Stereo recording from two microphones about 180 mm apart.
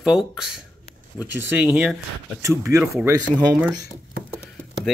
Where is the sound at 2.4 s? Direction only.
15° right (ahead or behind).